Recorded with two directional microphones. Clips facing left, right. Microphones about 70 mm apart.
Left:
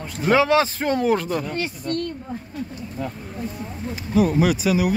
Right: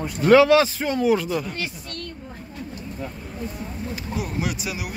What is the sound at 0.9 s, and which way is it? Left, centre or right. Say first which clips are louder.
Speech: right 1 dB; left.